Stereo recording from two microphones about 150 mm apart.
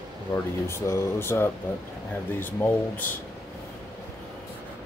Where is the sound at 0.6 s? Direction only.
15° left (ahead or behind).